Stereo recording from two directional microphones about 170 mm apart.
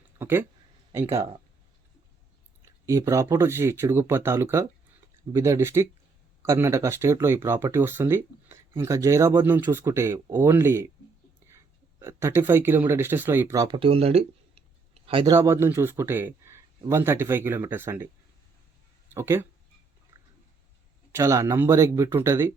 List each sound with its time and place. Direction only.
0.2 s speech: 15° right (ahead or behind)
2.6 s speech: 15° right (ahead or behind)
13.7 s speech: 35° right (ahead or behind)
15.3 s speech: 15° right (ahead or behind)
19.1 s speech: 15° right (ahead or behind)
21.1 s speech: 15° right (ahead or behind)